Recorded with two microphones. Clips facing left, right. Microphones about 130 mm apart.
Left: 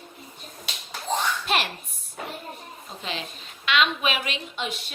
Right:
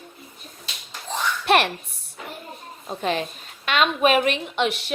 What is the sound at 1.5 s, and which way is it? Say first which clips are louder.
Speech: right 9 dB; 65° right (ahead or behind).